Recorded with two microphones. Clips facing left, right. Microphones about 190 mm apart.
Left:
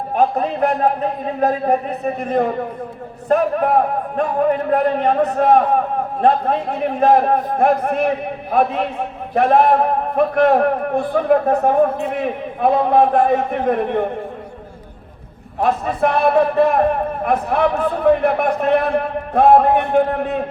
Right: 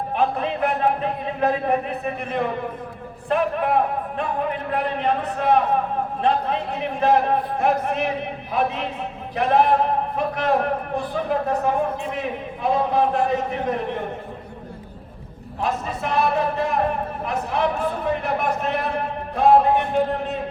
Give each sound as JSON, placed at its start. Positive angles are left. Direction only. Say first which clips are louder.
{"t": 0.2, "sound": "a sound", "louder": "left 6 dB", "side_deg": 40}
{"t": 1.4, "sound": "a man's voice", "louder": "left 4 dB", "side_deg": 40}
{"t": 15.6, "sound": "a man's voice", "louder": "left 8 dB", "side_deg": 55}